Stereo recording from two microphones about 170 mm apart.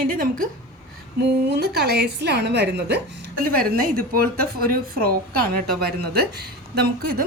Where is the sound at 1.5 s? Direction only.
75° right (ahead or behind).